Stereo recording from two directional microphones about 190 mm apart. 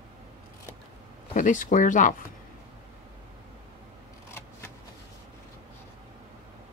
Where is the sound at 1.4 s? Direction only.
40° left (ahead or behind).